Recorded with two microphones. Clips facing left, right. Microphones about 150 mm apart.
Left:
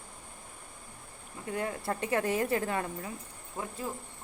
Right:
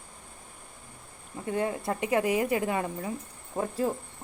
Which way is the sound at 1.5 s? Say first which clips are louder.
Right 4 dB; 20° right (ahead or behind).